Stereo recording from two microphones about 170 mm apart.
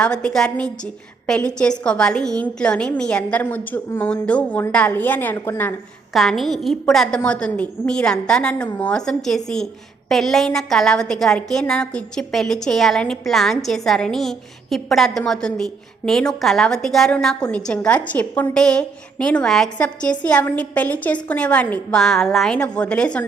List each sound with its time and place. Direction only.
0.0 s a woman's voice: 5° left (ahead or behind)
6.1 s a woman's voice: centre (ahead or behind)